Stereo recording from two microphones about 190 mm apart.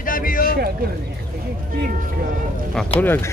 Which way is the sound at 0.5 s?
55° right (ahead or behind).